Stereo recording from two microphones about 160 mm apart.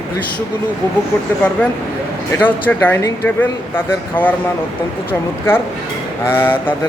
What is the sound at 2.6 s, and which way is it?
Speech, 15° left (ahead or behind).